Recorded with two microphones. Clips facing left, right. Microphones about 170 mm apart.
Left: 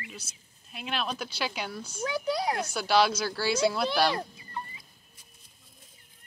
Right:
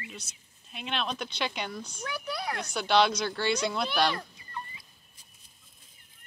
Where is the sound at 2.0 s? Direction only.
25° left (ahead or behind).